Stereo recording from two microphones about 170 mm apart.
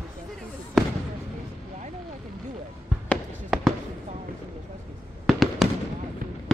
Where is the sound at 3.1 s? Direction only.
Centre (ahead or behind).